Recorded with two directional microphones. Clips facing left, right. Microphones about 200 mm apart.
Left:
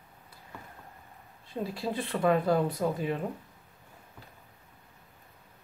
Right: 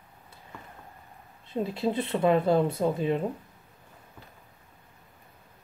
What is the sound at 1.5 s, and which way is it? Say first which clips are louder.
Speech: right 5 dB; 20° right (ahead or behind).